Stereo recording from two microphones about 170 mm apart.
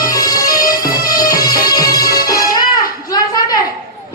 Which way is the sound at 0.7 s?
60° left (ahead or behind).